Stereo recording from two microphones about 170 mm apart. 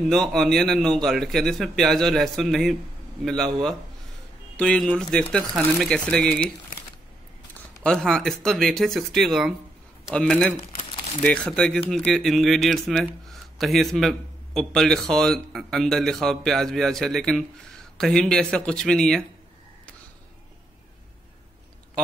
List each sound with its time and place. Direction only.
0.1 s speech: 5° left (ahead or behind)
4.6 s speech: 5° left (ahead or behind)
7.8 s speech: 5° left (ahead or behind)